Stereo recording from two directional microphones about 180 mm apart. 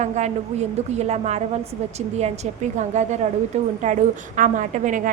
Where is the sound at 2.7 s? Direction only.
40° right (ahead or behind).